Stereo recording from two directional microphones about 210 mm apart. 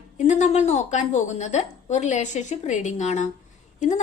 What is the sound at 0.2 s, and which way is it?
A woman's voice, 35° left (ahead or behind).